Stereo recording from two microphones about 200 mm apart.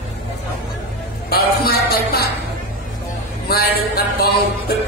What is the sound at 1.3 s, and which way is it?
Music, 50° left (ahead or behind).